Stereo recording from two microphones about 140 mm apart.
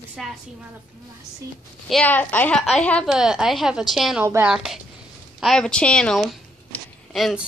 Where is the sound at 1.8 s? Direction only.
5° left (ahead or behind).